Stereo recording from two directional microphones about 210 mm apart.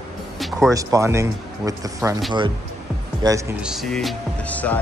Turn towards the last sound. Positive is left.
turn(degrees=5)  # may be behind; listen again after turning